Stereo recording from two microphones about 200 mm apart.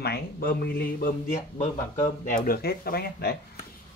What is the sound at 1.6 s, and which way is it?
Speech, 40° left (ahead or behind).